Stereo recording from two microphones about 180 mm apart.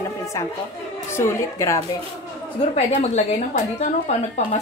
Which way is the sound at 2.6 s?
35° left (ahead or behind).